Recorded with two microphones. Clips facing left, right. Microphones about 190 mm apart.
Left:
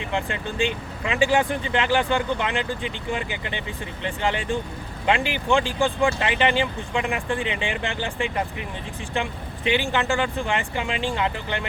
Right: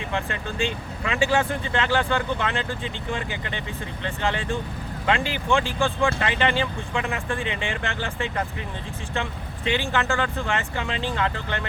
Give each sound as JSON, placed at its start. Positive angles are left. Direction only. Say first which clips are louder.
{"t": 0.0, "sound": "speech", "louder": "left 2 dB", "side_deg": 15}